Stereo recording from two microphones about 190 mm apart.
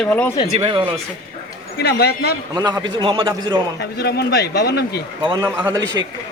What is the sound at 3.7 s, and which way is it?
Speech, 55° left (ahead or behind).